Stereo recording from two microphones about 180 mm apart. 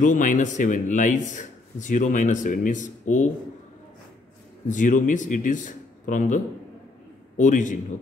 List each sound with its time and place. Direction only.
0.0 s a man's voice: 45° left (ahead or behind)
4.6 s a man's voice: 45° left (ahead or behind)